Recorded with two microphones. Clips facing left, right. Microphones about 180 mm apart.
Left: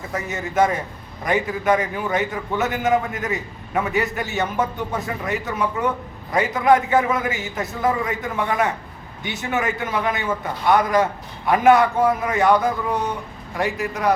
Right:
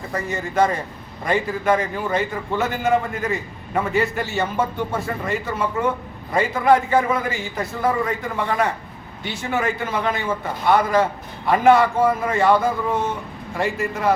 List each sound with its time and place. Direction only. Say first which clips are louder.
0.1 s a man's voice: right 1 dB; centre (ahead or behind)